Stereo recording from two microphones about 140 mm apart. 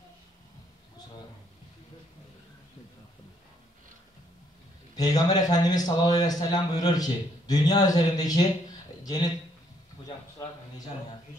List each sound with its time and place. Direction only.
4.9 s a man's voice: 25° left (ahead or behind)